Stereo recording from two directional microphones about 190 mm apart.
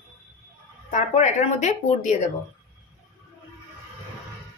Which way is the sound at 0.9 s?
40° left (ahead or behind).